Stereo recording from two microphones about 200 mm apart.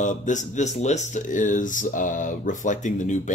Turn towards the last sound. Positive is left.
turn(degrees=35)  # may be behind; listen again after turning